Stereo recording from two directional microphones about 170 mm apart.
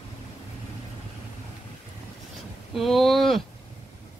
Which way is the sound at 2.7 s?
Centre (ahead or behind).